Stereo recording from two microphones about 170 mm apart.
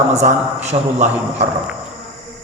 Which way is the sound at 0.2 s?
40° right (ahead or behind).